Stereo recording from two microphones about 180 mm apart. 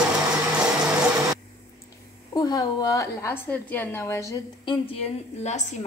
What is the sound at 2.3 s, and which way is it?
A woman's voice, 20° left (ahead or behind).